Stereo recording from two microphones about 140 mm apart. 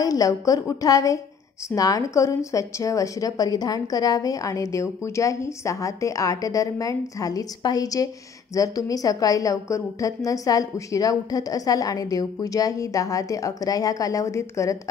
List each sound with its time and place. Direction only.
0.0 s a woman's voice: 25° left (ahead or behind)